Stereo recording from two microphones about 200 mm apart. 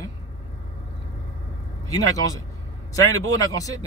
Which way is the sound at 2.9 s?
15° left (ahead or behind).